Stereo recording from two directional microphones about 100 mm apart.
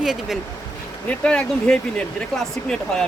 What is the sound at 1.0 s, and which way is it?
Speech, 10° left (ahead or behind).